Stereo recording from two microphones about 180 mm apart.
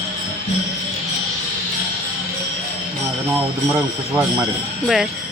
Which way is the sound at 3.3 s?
10° right (ahead or behind).